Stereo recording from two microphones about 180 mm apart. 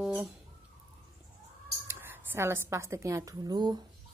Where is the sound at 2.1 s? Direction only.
10° right (ahead or behind).